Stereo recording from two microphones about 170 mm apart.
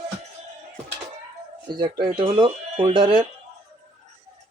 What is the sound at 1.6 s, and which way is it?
Speech, 25° right (ahead or behind).